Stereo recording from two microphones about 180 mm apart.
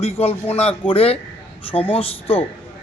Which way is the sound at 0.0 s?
35° left (ahead or behind).